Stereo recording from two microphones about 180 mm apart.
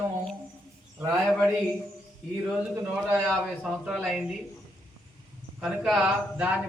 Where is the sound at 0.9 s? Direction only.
15° right (ahead or behind).